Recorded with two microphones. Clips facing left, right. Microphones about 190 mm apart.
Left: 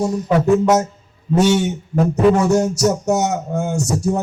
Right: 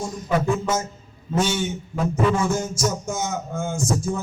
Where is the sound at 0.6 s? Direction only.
70° left (ahead or behind).